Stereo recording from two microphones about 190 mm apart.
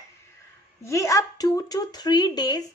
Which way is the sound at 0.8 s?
15° left (ahead or behind).